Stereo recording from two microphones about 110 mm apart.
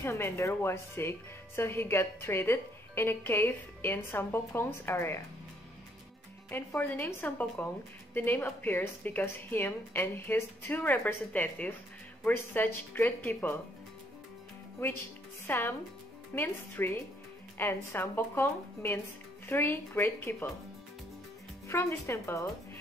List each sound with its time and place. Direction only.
0.0 s speech: 25° left (ahead or behind)
6.5 s speech: 20° left (ahead or behind)
15.4 s speech: 20° left (ahead or behind)
21.6 s speech: 25° left (ahead or behind)